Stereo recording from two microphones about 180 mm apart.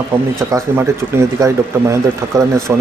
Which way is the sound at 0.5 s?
15° right (ahead or behind).